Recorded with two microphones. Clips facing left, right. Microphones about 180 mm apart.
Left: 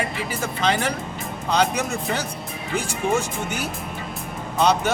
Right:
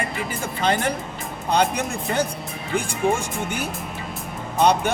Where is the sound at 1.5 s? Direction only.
55° right (ahead or behind).